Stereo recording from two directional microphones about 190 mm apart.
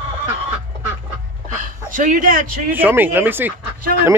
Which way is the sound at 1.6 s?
45° right (ahead or behind).